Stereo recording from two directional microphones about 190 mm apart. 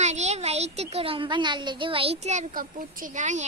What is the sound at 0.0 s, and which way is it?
A child's voice, 35° right (ahead or behind).